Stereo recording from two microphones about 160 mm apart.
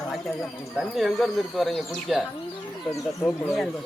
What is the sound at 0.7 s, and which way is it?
Speech, centre (ahead or behind).